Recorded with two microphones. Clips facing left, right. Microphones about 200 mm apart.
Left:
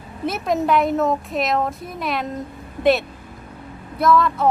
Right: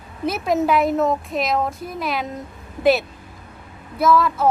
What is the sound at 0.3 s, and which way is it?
Speech, centre (ahead or behind).